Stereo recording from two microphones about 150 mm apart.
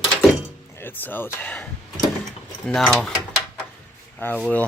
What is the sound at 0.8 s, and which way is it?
Speech, 10° left (ahead or behind).